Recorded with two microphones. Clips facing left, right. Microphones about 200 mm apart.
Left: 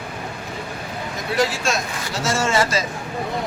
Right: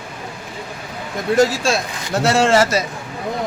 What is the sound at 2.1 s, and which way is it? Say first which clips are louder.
Speech: right 7 dB; 60° right (ahead or behind).